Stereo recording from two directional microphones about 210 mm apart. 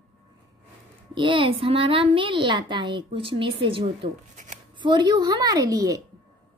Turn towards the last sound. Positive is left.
turn(degrees=-15)  # may be behind; listen again after turning